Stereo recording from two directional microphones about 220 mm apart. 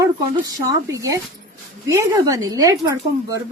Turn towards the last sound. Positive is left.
turn(degrees=-15)  # may be behind; listen again after turning